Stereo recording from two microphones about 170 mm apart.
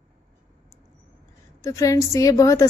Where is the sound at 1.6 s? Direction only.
20° left (ahead or behind).